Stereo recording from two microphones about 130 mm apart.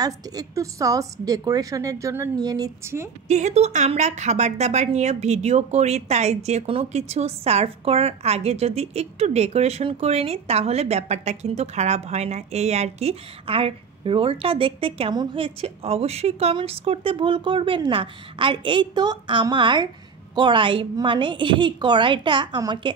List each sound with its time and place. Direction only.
0.0 s a woman's voice: 30° right (ahead or behind)
3.3 s a woman's voice: 60° right (ahead or behind); by 22.9 s 35° right (ahead or behind)